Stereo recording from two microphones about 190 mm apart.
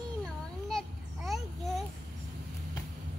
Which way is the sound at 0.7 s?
Centre (ahead or behind).